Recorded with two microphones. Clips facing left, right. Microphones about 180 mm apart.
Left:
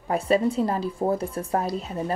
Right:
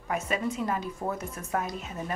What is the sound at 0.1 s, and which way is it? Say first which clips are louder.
Speech: left 8 dB; 30° left (ahead or behind).